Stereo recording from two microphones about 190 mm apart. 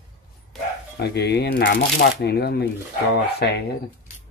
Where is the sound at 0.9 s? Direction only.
60° left (ahead or behind).